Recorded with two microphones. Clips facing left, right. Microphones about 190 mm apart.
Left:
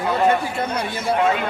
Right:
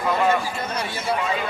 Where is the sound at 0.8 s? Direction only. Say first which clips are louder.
Left 5 dB; 60° left (ahead or behind).